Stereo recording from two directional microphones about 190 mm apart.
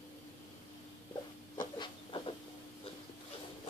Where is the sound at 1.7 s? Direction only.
25° left (ahead or behind).